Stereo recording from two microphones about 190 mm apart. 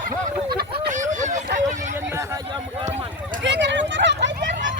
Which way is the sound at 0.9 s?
40° right (ahead or behind).